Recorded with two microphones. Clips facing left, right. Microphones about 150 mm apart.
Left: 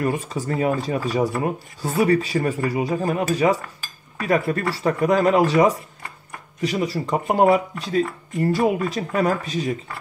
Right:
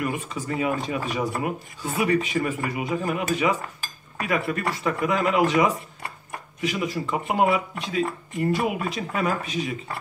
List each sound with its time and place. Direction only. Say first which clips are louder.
0.0 s speech: left 5 dB; 40° left (ahead or behind)